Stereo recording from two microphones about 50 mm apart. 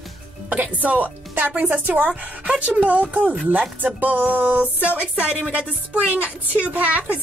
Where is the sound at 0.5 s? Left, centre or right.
Right.